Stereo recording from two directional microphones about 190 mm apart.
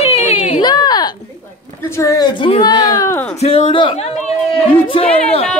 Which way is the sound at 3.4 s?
30° left (ahead or behind).